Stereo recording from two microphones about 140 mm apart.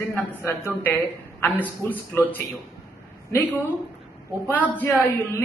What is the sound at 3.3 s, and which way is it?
Speech, 10° left (ahead or behind).